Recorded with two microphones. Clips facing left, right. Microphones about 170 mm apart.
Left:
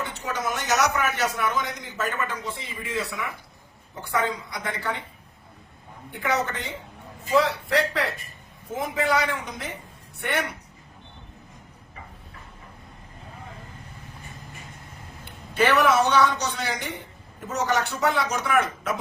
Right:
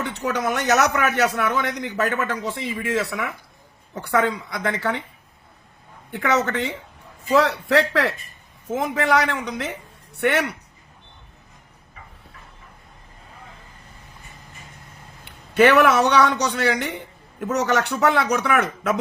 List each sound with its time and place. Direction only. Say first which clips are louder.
0.1 s a man's voice: right 6 dB; 70° right (ahead or behind)
6.1 s a man's voice: right 5 dB; 75° right (ahead or behind)
15.5 s a man's voice: right 5 dB; 65° right (ahead or behind)